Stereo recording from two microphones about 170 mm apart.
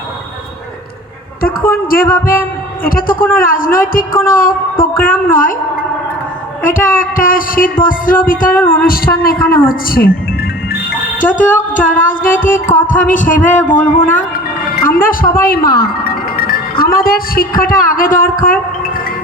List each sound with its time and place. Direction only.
1.7 s a woman's voice: 55° left (ahead or behind)
6.6 s music: 55° left (ahead or behind)
8.7 s a woman's voice: 55° left (ahead or behind)
11.2 s music: 50° left (ahead or behind)
14.8 s speech: 55° left (ahead or behind)